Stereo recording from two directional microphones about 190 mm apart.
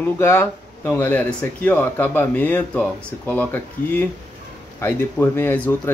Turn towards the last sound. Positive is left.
turn(degrees=10)  # may be behind; listen again after turning